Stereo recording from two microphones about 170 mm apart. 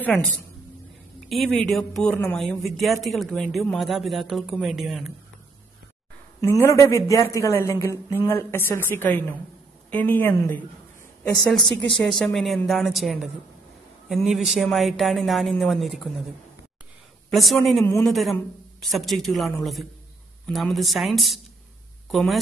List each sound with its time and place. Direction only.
1.3 s speech: centre (ahead or behind)
6.4 s a woman's voice: 15° left (ahead or behind); by 16.0 s centre (ahead or behind)
17.3 s speech: centre (ahead or behind)